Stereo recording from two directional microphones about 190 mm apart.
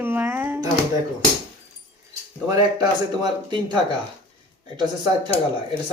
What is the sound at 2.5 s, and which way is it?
Speech, 20° right (ahead or behind).